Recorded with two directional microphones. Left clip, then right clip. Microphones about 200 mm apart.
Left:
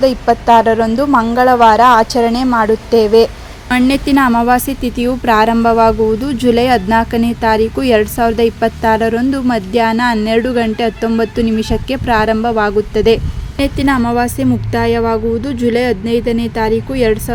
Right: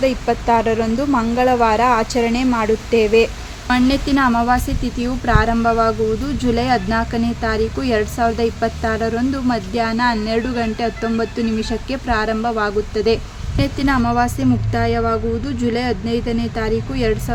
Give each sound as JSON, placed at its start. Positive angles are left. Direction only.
{"t": 0.0, "sound": "a woman's voice", "side_deg": 25}